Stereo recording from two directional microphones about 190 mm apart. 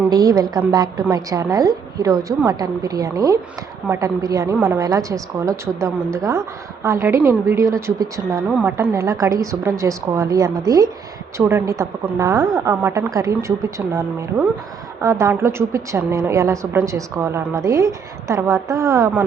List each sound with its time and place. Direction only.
0.1 s a woman's voice: 20° right (ahead or behind)